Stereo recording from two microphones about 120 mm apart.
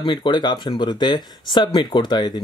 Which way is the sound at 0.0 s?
40° left (ahead or behind).